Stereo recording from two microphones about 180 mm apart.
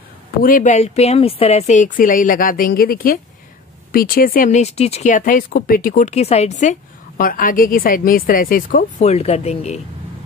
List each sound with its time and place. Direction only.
0.4 s speech: 50° left (ahead or behind)
9.0 s speech: 35° left (ahead or behind)